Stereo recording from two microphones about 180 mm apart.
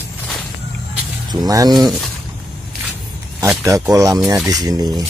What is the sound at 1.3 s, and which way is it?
Speech, 20° right (ahead or behind).